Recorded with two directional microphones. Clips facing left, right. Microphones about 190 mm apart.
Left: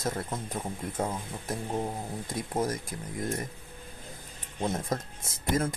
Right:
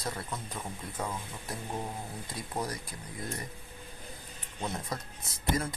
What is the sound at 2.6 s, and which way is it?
Speech, 45° left (ahead or behind).